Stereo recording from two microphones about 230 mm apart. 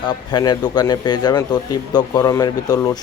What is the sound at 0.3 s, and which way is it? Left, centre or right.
Speech, centre.